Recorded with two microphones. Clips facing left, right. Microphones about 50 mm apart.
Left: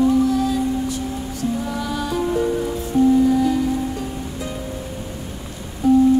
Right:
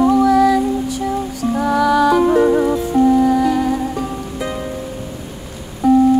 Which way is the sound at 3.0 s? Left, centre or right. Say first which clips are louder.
Right 1 dB; right.